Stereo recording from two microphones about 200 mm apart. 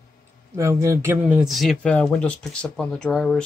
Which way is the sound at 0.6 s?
15° right (ahead or behind).